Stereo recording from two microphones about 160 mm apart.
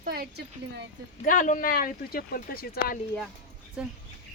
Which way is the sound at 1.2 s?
55° left (ahead or behind).